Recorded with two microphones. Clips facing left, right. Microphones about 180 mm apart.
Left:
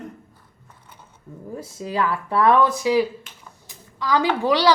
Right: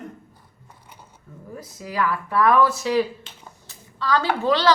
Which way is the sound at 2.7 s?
10° left (ahead or behind).